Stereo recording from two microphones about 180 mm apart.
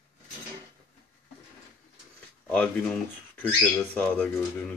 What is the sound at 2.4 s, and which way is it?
Speech, 5° left (ahead or behind).